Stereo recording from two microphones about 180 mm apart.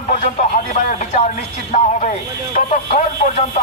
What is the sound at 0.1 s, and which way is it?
Speech, 45° left (ahead or behind).